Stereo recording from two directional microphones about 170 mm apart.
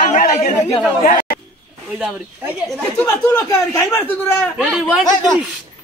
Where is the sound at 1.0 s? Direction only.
55° left (ahead or behind).